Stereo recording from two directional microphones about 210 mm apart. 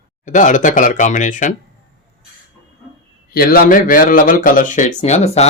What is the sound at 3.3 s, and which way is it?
A man's voice, 40° left (ahead or behind).